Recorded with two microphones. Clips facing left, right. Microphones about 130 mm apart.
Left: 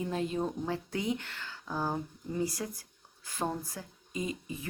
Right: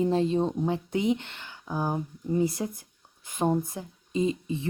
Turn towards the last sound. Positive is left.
turn(degrees=-25)  # may be behind; listen again after turning